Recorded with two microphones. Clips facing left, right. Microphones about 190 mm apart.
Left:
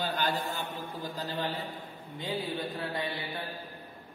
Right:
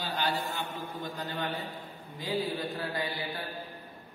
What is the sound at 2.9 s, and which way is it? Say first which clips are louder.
Mantra: even; 25° left (ahead or behind).